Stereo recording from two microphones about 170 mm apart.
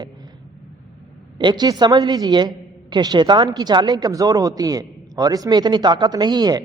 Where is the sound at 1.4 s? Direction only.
25° right (ahead or behind).